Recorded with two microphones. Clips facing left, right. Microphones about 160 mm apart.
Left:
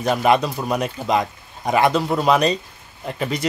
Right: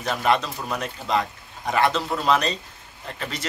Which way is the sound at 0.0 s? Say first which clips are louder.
Left 5 dB; 15° left (ahead or behind).